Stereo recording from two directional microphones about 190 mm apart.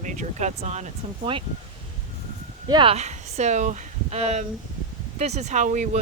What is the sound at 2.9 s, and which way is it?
A woman's voice, 35° right (ahead or behind).